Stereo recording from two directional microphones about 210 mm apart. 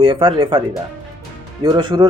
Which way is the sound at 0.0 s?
25° right (ahead or behind).